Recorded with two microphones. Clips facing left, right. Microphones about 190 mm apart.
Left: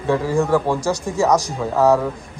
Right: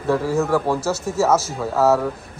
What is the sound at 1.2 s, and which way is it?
Speech, 15° left (ahead or behind).